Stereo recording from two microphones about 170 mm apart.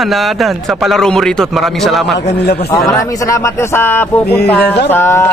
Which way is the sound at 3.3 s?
15° left (ahead or behind).